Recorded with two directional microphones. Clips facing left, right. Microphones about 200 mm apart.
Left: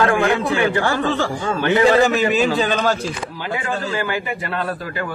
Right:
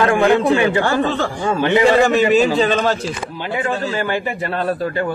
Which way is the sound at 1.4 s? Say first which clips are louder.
Right 3 dB; 20° right (ahead or behind).